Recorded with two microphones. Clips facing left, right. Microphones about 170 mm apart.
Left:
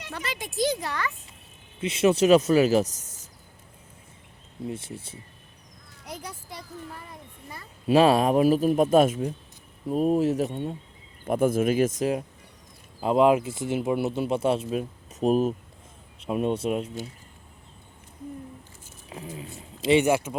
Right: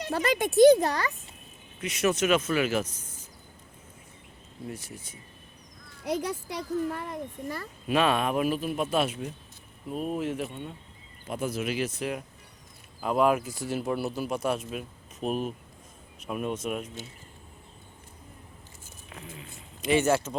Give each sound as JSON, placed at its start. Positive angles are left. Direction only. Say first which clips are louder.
{"t": 0.0, "sound": "speech", "louder": "right 9 dB", "side_deg": -40}
{"t": 1.8, "sound": "speech", "louder": "left 5 dB", "side_deg": 25}
{"t": 4.6, "sound": "speech", "louder": "left 5 dB", "side_deg": 25}
{"t": 6.1, "sound": "a child's voice", "louder": "right 9 dB", "side_deg": -80}
{"t": 7.9, "sound": "speech", "louder": "left 6 dB", "side_deg": 35}
{"t": 11.3, "sound": "speech", "louder": "left 9 dB", "side_deg": 55}
{"t": 13.0, "sound": "speech", "louder": "left 4 dB", "side_deg": 25}
{"t": 16.2, "sound": "speech", "louder": "left 6 dB", "side_deg": 30}
{"t": 19.1, "sound": "speech", "louder": "left 7 dB", "side_deg": 30}